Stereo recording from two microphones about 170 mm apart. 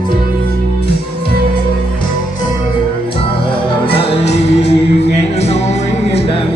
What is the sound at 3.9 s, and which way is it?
Music, 35° left (ahead or behind).